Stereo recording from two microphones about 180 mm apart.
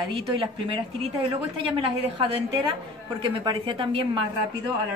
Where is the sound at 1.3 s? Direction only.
30° right (ahead or behind).